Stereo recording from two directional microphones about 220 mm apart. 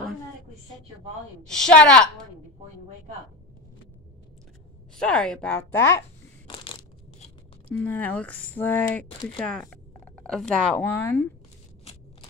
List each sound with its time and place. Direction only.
1.4 s a woman's voice: centre (ahead or behind)
4.9 s speech: 5° left (ahead or behind)
6.5 s crushing: 25° left (ahead or behind)
7.7 s speech: 10° left (ahead or behind)
11.8 s a sound: 25° left (ahead or behind)